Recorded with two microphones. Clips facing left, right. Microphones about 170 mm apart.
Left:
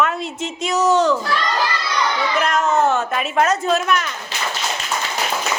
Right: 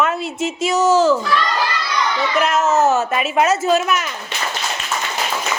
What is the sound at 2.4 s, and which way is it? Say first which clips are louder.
Speech: right 2 dB; 5° right (ahead or behind).